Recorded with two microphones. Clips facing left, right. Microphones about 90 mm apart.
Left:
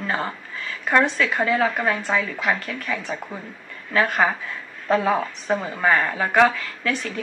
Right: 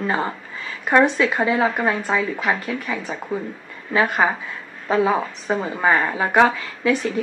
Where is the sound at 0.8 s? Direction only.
20° right (ahead or behind).